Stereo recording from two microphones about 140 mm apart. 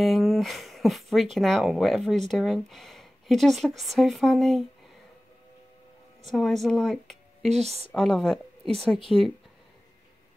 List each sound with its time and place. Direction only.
0.0 s speech: centre (ahead or behind)
6.2 s speech: centre (ahead or behind)
7.5 s a woman's voice: 50° right (ahead or behind)
7.9 s speech: 5° left (ahead or behind)